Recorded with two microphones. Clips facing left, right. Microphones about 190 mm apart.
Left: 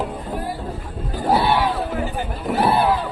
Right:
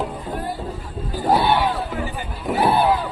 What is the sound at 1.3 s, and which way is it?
Crowd, 5° left (ahead or behind).